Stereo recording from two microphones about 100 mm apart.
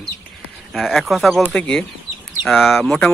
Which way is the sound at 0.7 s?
Centre (ahead or behind).